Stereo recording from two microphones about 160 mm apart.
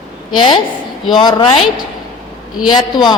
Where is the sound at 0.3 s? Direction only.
30° left (ahead or behind).